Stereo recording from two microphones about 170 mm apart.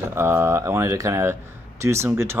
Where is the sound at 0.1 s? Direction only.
15° right (ahead or behind).